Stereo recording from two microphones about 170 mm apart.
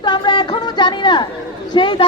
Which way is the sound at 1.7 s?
25° left (ahead or behind).